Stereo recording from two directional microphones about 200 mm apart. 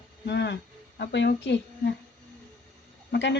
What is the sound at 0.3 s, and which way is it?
A woman's voice, 60° left (ahead or behind).